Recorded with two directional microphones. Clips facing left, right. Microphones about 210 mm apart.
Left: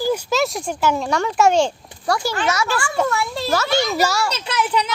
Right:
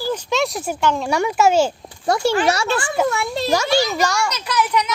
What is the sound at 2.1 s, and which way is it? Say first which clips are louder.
A child's voice: right 4 dB; 20° right (ahead or behind).